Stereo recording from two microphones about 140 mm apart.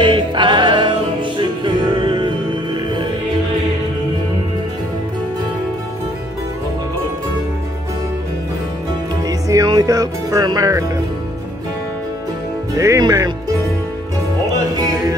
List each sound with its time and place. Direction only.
0.0 s music: 35° right (ahead or behind)
9.5 s music: 25° right (ahead or behind)
12.7 s music: 25° right (ahead or behind)